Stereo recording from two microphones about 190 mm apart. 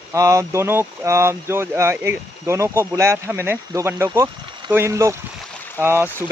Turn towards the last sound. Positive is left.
turn(degrees=-10)  # may be behind; listen again after turning